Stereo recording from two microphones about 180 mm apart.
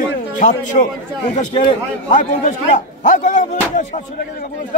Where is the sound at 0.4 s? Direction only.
45° left (ahead or behind).